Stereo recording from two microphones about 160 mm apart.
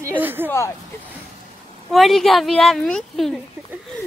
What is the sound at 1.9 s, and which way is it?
Speech, centre (ahead or behind).